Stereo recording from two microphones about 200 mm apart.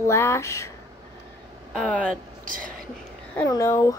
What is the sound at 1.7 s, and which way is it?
Speech, 5° left (ahead or behind).